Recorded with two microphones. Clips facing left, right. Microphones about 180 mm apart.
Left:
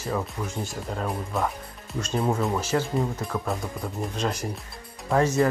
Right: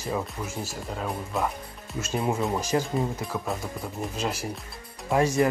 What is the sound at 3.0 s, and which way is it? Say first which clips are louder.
Speech: left 1 dB; centre (ahead or behind).